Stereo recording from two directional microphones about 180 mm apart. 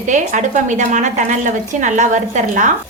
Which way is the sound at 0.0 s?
45° right (ahead or behind).